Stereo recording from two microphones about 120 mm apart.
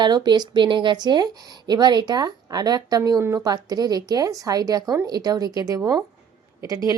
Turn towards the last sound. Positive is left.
turn(degrees=-30)  # may be behind; listen again after turning